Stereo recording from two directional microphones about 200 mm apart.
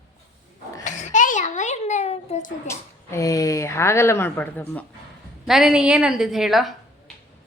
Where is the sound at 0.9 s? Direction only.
35° left (ahead or behind).